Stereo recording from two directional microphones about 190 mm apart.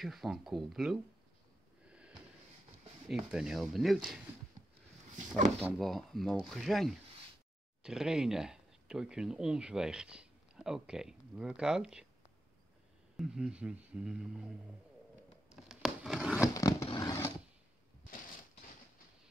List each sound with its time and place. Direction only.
0.0 s speech: centre (ahead or behind)
1.9 s a sound: 5° right (ahead or behind)
3.2 s speech: 5° right (ahead or behind)
5.6 s speech: 5° left (ahead or behind)
13.2 s speech: 5° right (ahead or behind)
15.5 s a sound: centre (ahead or behind)
16.5 s vehicle: 20° left (ahead or behind)